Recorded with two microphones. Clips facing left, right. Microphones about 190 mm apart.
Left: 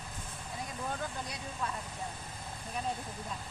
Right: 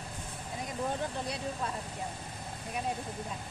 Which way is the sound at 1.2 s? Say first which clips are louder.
Right 4 dB; 30° right (ahead or behind).